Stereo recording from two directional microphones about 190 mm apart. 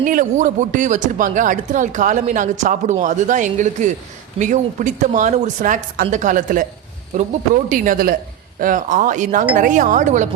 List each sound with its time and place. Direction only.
0.0 s speech: 45° right (ahead or behind)
7.7 s speech: 50° right (ahead or behind)